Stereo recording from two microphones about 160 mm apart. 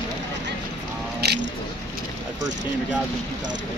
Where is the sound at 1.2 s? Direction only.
90° right.